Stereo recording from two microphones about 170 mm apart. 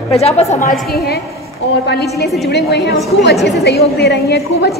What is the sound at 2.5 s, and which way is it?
Speech, 90° left.